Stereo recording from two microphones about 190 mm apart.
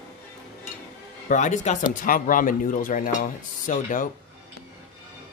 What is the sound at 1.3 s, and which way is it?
Speech, 40° left (ahead or behind).